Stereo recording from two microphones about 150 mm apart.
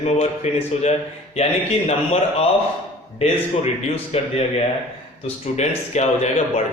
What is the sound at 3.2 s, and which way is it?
A man's voice, 45° left (ahead or behind).